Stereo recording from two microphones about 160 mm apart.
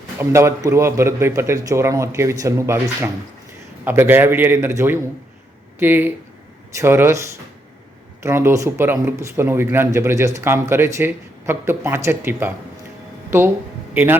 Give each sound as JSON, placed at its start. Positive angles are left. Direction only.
{"t": 0.2, "sound": "speech", "side_deg": -15}
{"t": 8.2, "sound": "a man's voice", "side_deg": -15}